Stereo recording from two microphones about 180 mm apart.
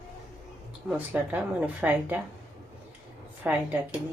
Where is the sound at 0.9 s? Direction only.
10° right (ahead or behind).